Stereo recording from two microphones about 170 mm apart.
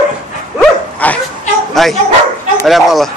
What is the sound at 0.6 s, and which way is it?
Bow-wow, 10° left (ahead or behind).